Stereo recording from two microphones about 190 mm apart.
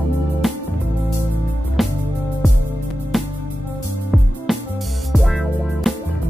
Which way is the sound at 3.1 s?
Centre (ahead or behind).